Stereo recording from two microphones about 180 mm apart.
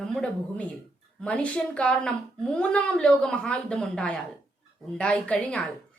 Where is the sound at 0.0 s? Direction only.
5° left (ahead or behind).